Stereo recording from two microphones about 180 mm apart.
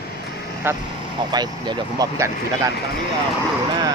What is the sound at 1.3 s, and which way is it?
Speech, 25° right (ahead or behind).